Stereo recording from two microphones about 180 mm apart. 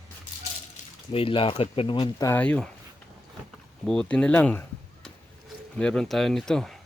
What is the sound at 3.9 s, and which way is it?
Speech, 5° left (ahead or behind).